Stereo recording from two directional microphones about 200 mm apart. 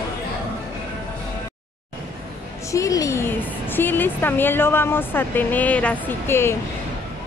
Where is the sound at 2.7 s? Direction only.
15° left (ahead or behind).